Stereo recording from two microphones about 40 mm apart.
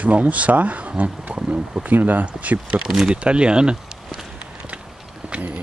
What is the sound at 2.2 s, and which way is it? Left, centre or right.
Speech, right.